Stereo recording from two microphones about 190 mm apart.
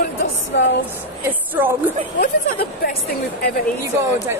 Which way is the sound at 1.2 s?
10° right (ahead or behind).